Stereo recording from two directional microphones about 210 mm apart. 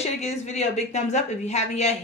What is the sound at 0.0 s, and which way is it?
Speech, 35° left (ahead or behind).